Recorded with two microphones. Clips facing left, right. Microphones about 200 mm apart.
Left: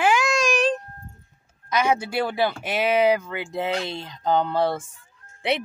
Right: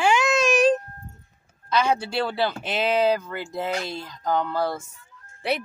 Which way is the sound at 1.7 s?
15° left (ahead or behind).